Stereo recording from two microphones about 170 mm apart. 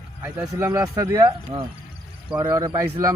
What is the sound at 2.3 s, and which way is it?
Speech, 20° right (ahead or behind).